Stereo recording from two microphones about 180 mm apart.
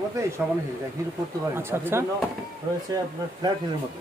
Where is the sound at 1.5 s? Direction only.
15° right (ahead or behind).